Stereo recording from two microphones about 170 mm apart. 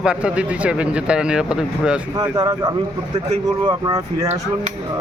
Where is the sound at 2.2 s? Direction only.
20° right (ahead or behind).